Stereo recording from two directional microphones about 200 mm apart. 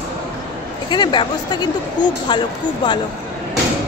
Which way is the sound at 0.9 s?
20° left (ahead or behind).